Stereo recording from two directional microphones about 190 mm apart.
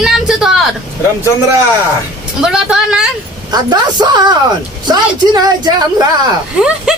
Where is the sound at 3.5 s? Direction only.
20° right (ahead or behind).